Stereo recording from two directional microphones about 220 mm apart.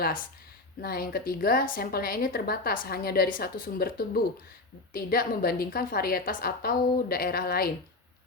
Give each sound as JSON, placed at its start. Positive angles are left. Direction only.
{"t": 0.8, "sound": "a woman's voice", "side_deg": 45}